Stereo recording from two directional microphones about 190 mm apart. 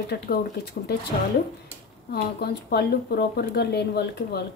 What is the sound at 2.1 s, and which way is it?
Speech, 55° left (ahead or behind).